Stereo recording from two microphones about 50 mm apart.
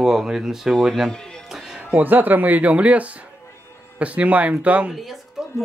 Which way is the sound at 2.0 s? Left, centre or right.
Right.